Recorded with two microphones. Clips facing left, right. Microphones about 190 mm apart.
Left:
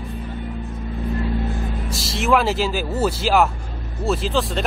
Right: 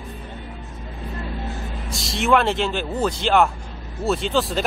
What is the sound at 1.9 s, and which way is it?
Speech, centre (ahead or behind).